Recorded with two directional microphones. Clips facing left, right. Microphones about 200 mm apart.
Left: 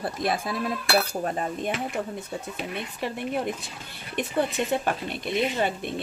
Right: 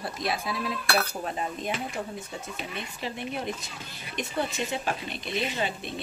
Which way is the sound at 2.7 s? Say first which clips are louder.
Left 4 dB; 55° left (ahead or behind).